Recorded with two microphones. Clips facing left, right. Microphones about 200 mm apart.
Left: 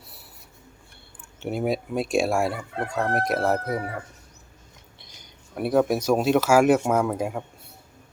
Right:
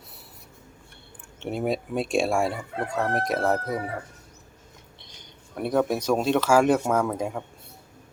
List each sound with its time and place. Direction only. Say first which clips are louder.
1.4 s speech: left 1 dB; 5° left (ahead or behind)
5.5 s speech: left 2 dB; 10° left (ahead or behind)